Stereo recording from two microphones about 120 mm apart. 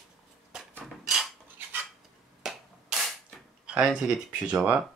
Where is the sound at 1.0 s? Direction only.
5° right (ahead or behind).